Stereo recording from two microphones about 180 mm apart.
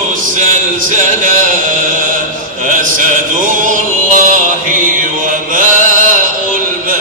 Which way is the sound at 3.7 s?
45° right (ahead or behind).